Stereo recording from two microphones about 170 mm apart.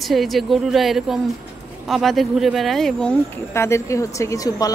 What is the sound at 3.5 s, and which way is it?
A woman's voice, 15° left (ahead or behind).